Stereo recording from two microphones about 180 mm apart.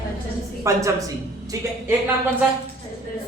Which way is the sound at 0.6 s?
15° right (ahead or behind).